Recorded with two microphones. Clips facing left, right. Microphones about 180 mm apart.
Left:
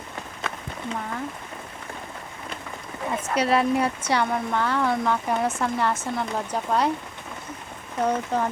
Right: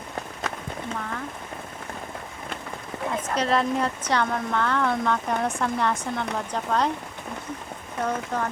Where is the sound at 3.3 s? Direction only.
10° left (ahead or behind).